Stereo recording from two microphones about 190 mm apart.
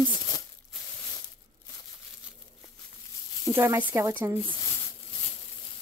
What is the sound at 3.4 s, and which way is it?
Speech, 15° right (ahead or behind).